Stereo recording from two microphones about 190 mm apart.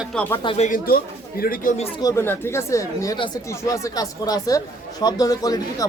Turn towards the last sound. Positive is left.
turn(degrees=20)  # may be behind; listen again after turning